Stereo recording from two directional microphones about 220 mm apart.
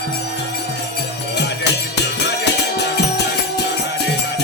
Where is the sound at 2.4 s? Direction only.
50° left (ahead or behind).